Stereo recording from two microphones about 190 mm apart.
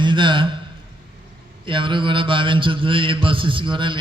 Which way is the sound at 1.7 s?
25° right (ahead or behind).